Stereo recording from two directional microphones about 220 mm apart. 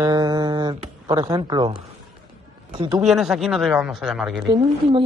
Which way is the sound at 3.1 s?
Centre (ahead or behind).